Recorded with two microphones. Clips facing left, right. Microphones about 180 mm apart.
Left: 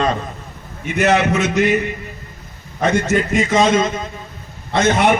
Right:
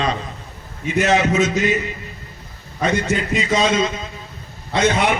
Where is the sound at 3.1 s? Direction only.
50° left (ahead or behind).